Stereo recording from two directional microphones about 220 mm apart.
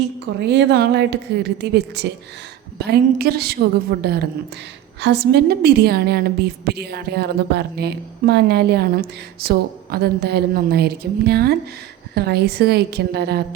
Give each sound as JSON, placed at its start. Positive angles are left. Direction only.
{"t": 0.3, "sound": "a woman's voice", "side_deg": -50}